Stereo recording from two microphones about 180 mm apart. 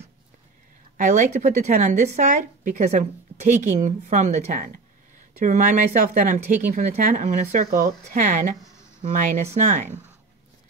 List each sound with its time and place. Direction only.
0.9 s speech: 45° right (ahead or behind)